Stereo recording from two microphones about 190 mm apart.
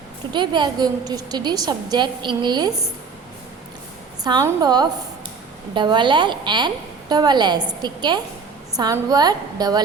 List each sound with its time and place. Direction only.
0.3 s a woman's voice: 25° right (ahead or behind)
4.2 s a woman's voice: 20° right (ahead or behind)